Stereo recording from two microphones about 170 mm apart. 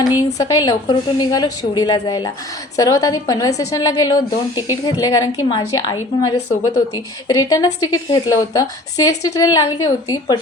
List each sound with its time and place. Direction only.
0.0 s a woman's voice: 20° left (ahead or behind)